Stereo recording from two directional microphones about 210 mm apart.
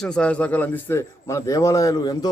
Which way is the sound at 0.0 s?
5° left (ahead or behind).